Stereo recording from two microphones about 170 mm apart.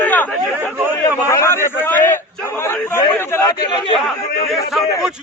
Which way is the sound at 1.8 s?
15° left (ahead or behind).